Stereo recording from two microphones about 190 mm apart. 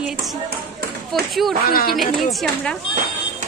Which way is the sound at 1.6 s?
50° left (ahead or behind).